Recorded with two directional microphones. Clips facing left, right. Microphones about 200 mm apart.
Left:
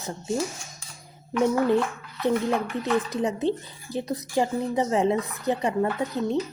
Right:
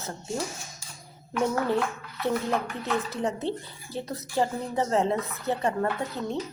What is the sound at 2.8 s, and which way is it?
Speech, 15° left (ahead or behind).